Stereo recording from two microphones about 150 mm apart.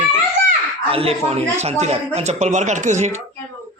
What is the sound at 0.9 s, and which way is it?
A woman's voice, 40° right (ahead or behind).